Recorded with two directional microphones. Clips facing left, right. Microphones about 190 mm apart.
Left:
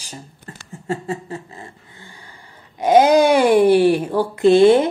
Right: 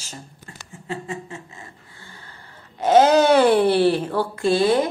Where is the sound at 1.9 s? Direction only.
15° left (ahead or behind).